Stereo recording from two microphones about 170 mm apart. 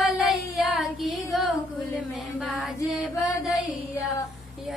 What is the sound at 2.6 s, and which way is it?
Female singing, centre (ahead or behind).